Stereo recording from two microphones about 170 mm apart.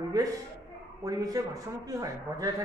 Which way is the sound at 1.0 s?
20° right (ahead or behind).